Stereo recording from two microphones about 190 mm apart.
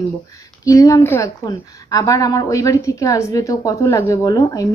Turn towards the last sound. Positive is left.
turn(degrees=15)  # may be behind; listen again after turning